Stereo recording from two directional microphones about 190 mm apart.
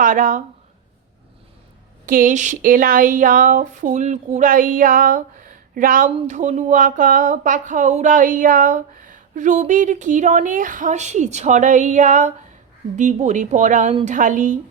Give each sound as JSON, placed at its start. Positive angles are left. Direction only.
{"t": 0.0, "sound": "a woman's voice", "side_deg": -45}
{"t": 2.0, "sound": "a woman's voice", "side_deg": -45}